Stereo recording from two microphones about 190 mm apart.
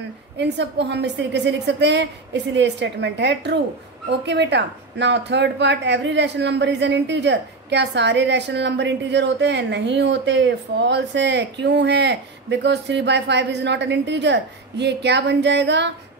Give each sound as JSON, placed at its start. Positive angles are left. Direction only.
{"t": 0.4, "sound": "a woman's voice", "side_deg": -65}